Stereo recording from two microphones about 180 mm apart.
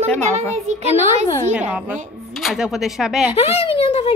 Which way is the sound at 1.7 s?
5° right (ahead or behind).